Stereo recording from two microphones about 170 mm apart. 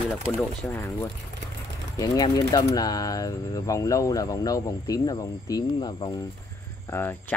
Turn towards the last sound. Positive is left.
turn(degrees=15)  # may be behind; listen again after turning